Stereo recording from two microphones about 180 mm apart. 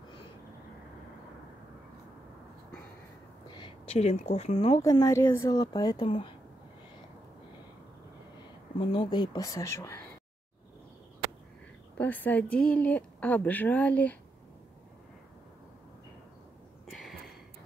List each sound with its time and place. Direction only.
3.4 s speech: 25° left (ahead or behind)
4.7 s a woman's voice: 20° left (ahead or behind)
8.7 s a woman's voice: 25° left (ahead or behind)
12.0 s speech: 10° left (ahead or behind)
16.9 s a sound: centre (ahead or behind)